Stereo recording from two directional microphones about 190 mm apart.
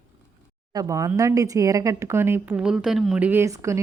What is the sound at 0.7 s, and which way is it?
Speech, 15° right (ahead or behind).